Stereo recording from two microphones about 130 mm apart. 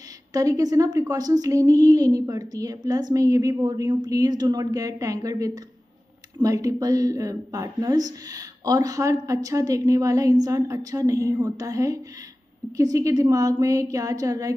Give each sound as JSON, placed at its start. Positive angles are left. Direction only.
{"t": 0.3, "sound": "speech", "side_deg": -25}